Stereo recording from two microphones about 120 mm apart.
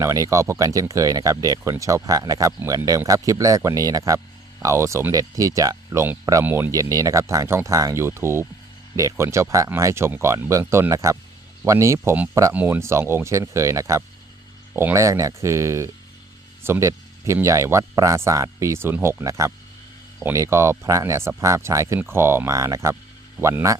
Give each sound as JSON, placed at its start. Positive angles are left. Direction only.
{"t": 0.0, "sound": "speech", "side_deg": -25}
{"t": 12.5, "sound": "speech", "side_deg": -15}